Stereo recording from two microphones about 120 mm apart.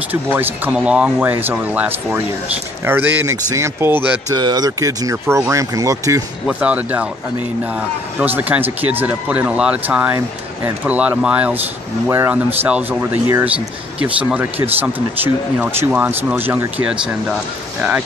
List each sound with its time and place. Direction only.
0.1 s speech: 15° right (ahead or behind)
4.3 s speech: 35° right (ahead or behind)
6.4 s speech: 10° right (ahead or behind)
8.2 s speech: 15° right (ahead or behind)